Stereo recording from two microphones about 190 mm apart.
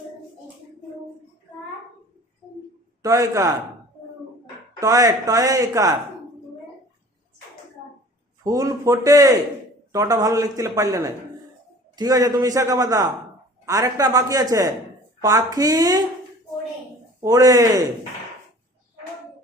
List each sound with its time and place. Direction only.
3.0 s a man's voice: 15° right (ahead or behind)
4.8 s a man's voice: 20° right (ahead or behind)
8.4 s a man's voice: 20° right (ahead or behind)
17.2 s a man's voice: 20° right (ahead or behind)